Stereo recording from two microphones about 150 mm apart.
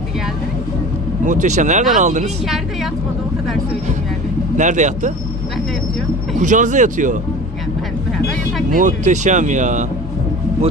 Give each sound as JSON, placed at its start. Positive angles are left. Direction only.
{"t": 1.2, "sound": "speech", "side_deg": -55}
{"t": 4.5, "sound": "speech", "side_deg": -55}
{"t": 6.3, "sound": "speech", "side_deg": -55}
{"t": 8.7, "sound": "speech", "side_deg": -55}